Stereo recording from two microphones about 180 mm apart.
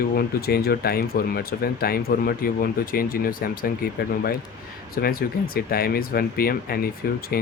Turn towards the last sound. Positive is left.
turn(degrees=55)  # may be behind; listen again after turning